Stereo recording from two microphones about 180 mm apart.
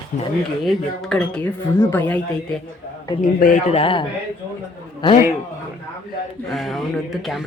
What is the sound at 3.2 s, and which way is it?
Speech, 45° left (ahead or behind).